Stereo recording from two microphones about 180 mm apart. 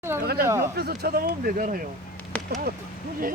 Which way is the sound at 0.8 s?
60° right (ahead or behind).